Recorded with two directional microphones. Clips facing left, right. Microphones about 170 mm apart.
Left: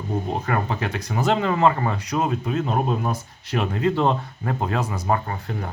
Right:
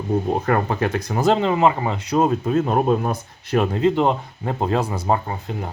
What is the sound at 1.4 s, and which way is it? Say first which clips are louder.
Speech: right 2 dB; 20° right (ahead or behind).